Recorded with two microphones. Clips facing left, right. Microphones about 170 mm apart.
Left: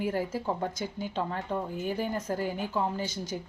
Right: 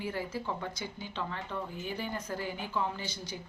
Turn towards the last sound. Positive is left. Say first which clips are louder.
# left 6 dB
turn(degrees=45)  # may be behind; listen again after turning